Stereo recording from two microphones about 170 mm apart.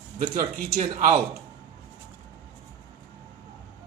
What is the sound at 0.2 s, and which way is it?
Speech, 55° right (ahead or behind).